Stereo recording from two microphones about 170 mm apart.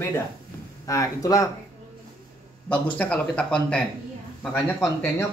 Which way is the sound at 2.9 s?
10° left (ahead or behind).